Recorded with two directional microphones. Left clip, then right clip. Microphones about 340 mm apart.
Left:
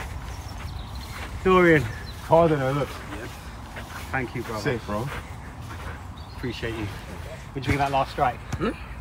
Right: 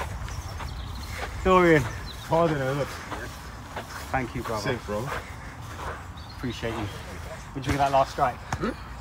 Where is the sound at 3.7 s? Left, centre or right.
Centre.